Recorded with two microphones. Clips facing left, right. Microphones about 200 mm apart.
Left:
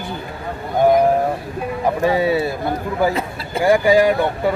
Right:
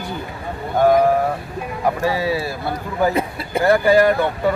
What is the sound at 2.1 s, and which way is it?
Speech, 25° left (ahead or behind).